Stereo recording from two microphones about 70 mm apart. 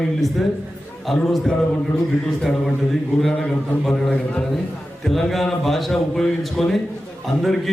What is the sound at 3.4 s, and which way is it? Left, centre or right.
A man's voice, centre.